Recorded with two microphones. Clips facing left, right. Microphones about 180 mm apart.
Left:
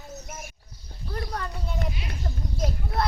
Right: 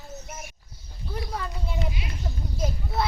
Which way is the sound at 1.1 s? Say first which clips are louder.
Even; 5° right (ahead or behind).